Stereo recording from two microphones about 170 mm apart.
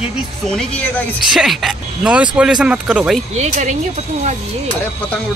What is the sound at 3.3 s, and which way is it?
Speech, 40° right (ahead or behind).